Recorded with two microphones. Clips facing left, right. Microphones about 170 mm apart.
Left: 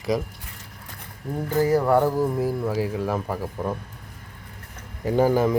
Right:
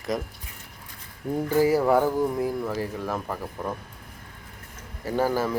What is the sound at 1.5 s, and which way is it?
Speech, 10° right (ahead or behind).